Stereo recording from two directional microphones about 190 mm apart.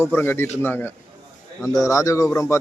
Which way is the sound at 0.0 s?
10° left (ahead or behind).